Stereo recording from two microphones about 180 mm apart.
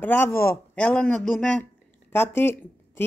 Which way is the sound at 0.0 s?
10° left (ahead or behind).